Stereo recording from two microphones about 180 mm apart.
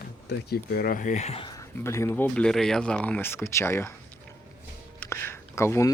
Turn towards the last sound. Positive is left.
turn(degrees=15)  # may be behind; listen again after turning